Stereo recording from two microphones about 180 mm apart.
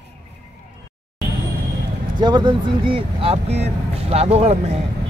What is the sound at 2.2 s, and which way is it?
Speech, 25° right (ahead or behind).